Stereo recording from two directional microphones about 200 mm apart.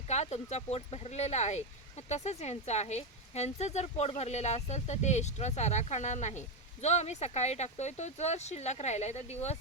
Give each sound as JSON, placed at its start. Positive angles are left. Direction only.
{"t": 0.1, "sound": "speech", "side_deg": 35}